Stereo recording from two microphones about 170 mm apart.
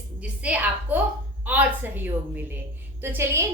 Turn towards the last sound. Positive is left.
turn(degrees=-15)  # may be behind; listen again after turning